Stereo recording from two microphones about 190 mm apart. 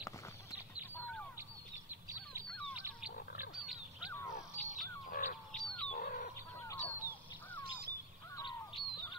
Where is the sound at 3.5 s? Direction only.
5° right (ahead or behind).